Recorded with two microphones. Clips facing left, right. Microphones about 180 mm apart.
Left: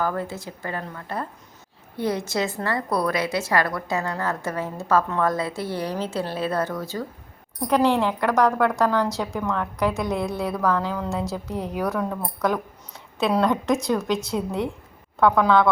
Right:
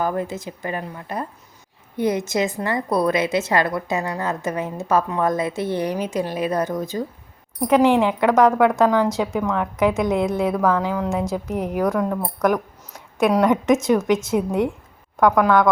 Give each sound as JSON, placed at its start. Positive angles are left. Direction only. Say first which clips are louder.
{"t": 0.0, "sound": "a woman's voice", "louder": "right 3 dB", "side_deg": -20}
{"t": 13.1, "sound": "a woman's voice", "louder": "right 4 dB", "side_deg": -15}